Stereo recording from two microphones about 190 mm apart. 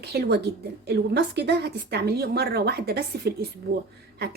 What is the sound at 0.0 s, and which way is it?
A woman's voice, 60° right (ahead or behind).